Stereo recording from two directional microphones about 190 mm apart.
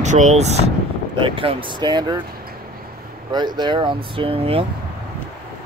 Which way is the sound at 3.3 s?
20° right (ahead or behind).